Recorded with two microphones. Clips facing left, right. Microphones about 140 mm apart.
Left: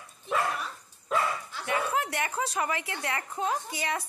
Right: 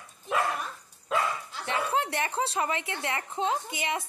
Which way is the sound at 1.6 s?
25° right (ahead or behind).